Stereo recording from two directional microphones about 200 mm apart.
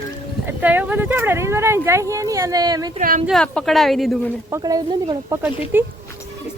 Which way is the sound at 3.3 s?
Centre (ahead or behind).